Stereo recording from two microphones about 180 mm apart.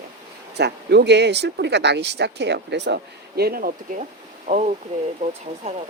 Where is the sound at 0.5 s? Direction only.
70° right (ahead or behind).